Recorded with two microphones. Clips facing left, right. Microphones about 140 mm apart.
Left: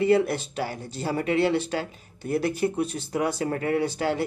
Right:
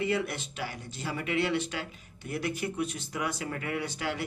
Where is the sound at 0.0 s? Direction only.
35° left (ahead or behind).